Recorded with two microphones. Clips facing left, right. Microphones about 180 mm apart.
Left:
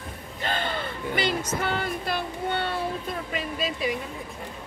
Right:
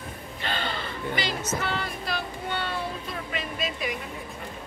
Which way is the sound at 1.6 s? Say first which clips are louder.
Left 3 dB; 55° left (ahead or behind).